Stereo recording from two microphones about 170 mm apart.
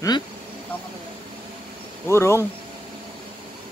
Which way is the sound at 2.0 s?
15° left (ahead or behind).